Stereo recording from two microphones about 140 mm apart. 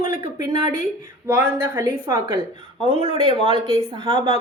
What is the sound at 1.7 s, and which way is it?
A woman's voice, 25° right (ahead or behind).